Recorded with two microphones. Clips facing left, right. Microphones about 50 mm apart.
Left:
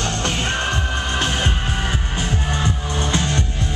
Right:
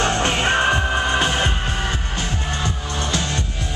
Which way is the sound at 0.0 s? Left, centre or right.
Right.